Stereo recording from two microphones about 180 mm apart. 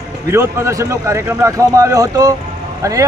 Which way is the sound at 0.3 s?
15° right (ahead or behind).